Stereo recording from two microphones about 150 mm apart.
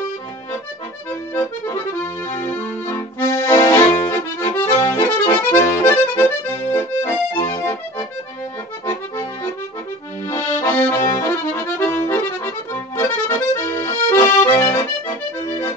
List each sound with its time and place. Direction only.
2.4 s accordion: 15° left (ahead or behind)
10.3 s accordion: 15° left (ahead or behind)